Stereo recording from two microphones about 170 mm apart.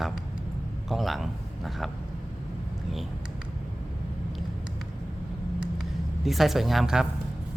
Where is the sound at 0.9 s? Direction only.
Centre (ahead or behind).